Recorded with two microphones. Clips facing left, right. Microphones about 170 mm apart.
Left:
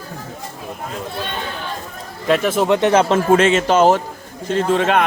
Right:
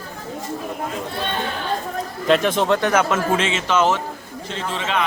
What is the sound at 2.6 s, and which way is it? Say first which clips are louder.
Speech: left 4 dB; 20° left (ahead or behind).